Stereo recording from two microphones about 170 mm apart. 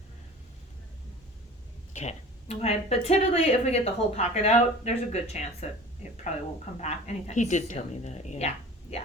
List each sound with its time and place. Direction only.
1.9 s speech: 40° left (ahead or behind)